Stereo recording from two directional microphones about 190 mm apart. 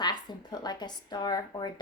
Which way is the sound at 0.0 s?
20° left (ahead or behind).